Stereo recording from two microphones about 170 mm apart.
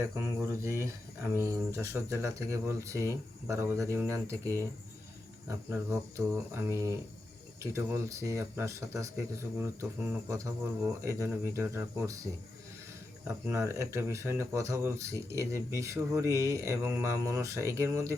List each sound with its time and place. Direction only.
0.2 s speech: 15° right (ahead or behind)
13.2 s speech: 15° right (ahead or behind)